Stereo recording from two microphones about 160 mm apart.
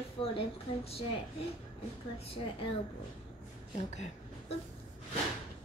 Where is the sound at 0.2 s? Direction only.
35° left (ahead or behind).